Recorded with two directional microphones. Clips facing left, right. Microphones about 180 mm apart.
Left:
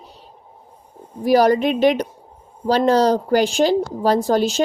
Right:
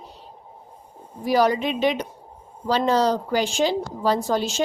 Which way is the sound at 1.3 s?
40° left (ahead or behind).